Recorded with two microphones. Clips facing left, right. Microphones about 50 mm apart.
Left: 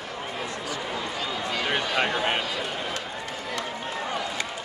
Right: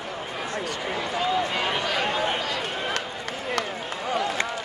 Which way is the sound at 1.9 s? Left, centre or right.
Left.